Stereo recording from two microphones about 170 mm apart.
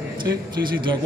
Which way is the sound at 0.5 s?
25° right (ahead or behind).